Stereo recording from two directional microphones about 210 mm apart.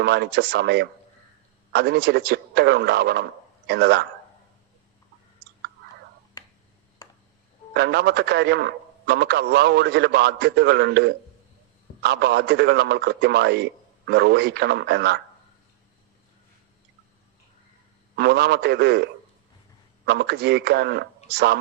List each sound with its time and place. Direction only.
0.0 s speech: 50° right (ahead or behind)
7.7 s speech: 50° right (ahead or behind)
18.2 s speech: 50° right (ahead or behind)
20.1 s speech: 50° right (ahead or behind)